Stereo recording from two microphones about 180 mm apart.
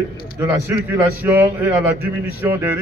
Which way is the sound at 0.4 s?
10° right (ahead or behind).